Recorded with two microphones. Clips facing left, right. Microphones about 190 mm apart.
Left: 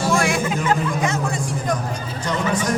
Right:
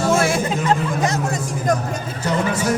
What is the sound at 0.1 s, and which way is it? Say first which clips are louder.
Music: right 1 dB; 35° right (ahead or behind).